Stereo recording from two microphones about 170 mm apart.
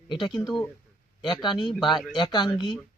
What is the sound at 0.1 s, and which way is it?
Speech, 30° left (ahead or behind).